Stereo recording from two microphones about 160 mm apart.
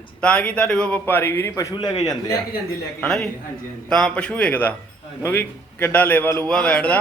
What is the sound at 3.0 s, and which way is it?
A man's voice, 5° left (ahead or behind).